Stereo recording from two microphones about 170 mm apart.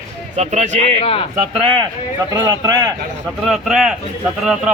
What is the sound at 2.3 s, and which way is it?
Speech, 25° right (ahead or behind).